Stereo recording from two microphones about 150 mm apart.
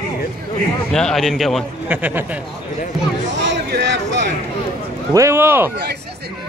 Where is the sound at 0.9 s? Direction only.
5° left (ahead or behind).